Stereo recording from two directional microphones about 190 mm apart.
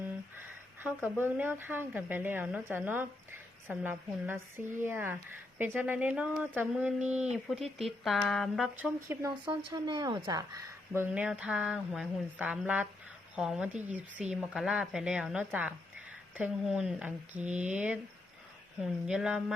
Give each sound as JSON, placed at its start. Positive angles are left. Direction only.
{"t": 0.3, "sound": "a sound", "side_deg": -10}
{"t": 1.2, "sound": "speech", "side_deg": -10}
{"t": 10.9, "sound": "speech", "side_deg": -10}
{"t": 17.4, "sound": "speech", "side_deg": -40}
{"t": 17.7, "sound": "speech", "side_deg": -5}